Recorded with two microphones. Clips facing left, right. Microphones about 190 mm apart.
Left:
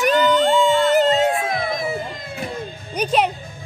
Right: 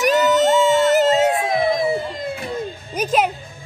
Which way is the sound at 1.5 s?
25° right (ahead or behind).